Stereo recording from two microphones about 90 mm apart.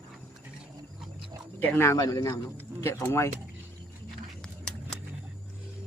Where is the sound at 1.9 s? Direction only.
40° left (ahead or behind).